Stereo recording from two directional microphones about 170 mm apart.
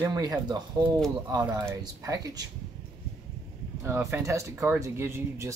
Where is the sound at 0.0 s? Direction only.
20° right (ahead or behind).